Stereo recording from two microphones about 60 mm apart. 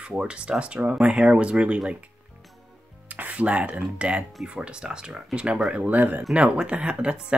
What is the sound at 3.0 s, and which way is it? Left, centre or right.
Speech, right.